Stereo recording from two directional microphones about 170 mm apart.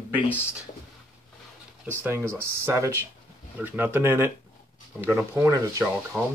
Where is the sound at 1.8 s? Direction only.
10° right (ahead or behind).